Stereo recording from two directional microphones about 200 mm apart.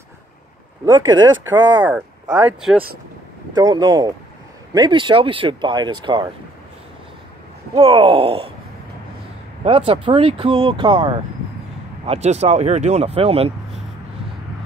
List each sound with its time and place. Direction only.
0.8 s speech: 20° right (ahead or behind)
3.5 s speech: 20° right (ahead or behind)
7.7 s speech: 25° right (ahead or behind)
9.7 s speech: 30° right (ahead or behind)